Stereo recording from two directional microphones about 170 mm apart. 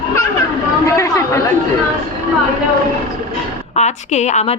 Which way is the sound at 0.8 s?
20° left (ahead or behind).